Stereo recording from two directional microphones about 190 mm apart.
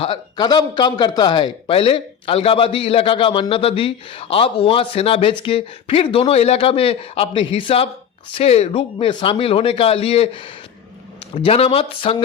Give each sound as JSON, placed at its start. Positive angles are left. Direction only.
{"t": 0.0, "sound": "a man's voice", "side_deg": 25}